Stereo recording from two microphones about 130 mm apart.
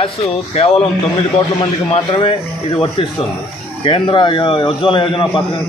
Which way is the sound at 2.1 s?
40° left (ahead or behind).